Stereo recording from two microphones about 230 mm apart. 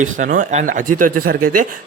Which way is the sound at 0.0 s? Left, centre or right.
Right.